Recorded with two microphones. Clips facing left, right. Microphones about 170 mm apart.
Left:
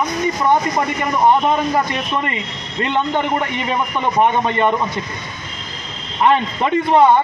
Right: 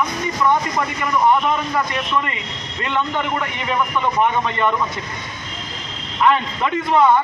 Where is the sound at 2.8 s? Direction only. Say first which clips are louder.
Left 3 dB; 30° left (ahead or behind).